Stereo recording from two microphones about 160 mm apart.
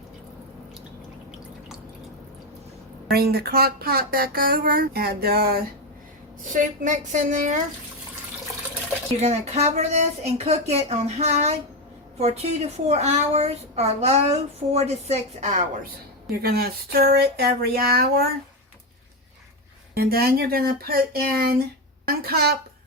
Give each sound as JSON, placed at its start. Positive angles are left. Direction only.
{"t": 3.1, "sound": "speech", "side_deg": -75}
{"t": 6.4, "sound": "speech", "side_deg": -55}
{"t": 9.1, "sound": "a woman's voice", "side_deg": -45}
{"t": 16.4, "sound": "speech", "side_deg": -75}
{"t": 19.9, "sound": "speech", "side_deg": -70}